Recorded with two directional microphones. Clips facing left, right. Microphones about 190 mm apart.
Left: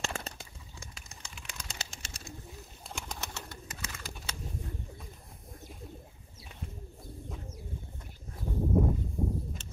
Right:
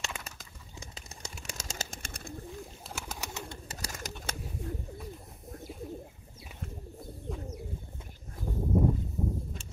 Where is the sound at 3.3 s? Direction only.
25° right (ahead or behind).